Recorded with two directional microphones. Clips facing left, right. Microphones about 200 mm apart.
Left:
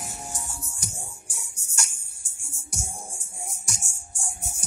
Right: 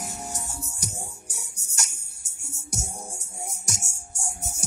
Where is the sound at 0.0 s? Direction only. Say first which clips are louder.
Right 3 dB; 40° right (ahead or behind).